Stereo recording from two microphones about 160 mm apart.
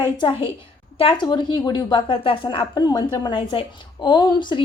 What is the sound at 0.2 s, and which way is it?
A woman's voice, 30° left (ahead or behind).